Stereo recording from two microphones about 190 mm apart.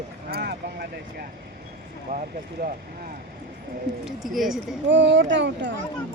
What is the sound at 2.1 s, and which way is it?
Speech, 50° right (ahead or behind).